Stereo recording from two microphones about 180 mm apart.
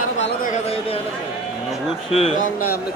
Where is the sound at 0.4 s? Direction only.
35° left (ahead or behind).